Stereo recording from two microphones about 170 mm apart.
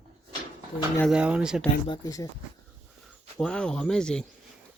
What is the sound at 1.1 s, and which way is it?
Speech, 5° right (ahead or behind).